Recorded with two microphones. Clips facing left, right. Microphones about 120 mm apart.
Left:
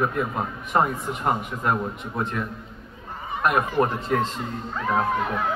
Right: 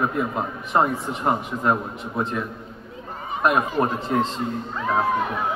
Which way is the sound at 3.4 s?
20° right (ahead or behind).